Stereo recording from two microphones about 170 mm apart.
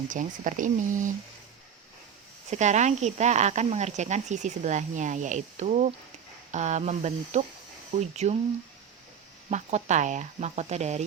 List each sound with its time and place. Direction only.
0.1 s speech: 50° right (ahead or behind)
2.5 s speech: 45° right (ahead or behind)
9.5 s speech: 40° right (ahead or behind)